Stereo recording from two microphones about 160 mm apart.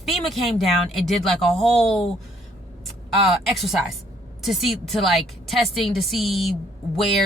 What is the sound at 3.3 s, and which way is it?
A woman's voice, centre (ahead or behind).